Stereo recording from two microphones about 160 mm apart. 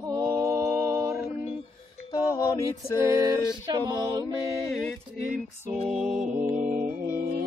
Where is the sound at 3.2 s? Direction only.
25° right (ahead or behind).